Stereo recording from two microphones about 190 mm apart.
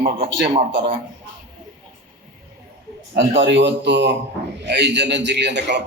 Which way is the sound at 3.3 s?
70° right (ahead or behind).